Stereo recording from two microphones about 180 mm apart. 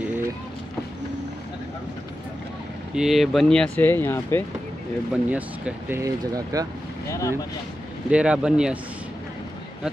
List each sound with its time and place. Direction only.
2.9 s speech: centre (ahead or behind)
5.1 s speech: 5° right (ahead or behind)
7.1 s speech: 15° left (ahead or behind)
8.1 s speech: 5° right (ahead or behind)